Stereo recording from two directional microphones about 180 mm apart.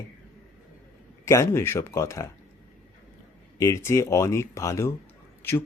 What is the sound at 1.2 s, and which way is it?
Speech, 15° left (ahead or behind).